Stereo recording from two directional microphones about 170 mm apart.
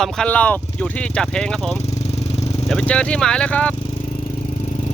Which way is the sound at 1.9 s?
40° left (ahead or behind).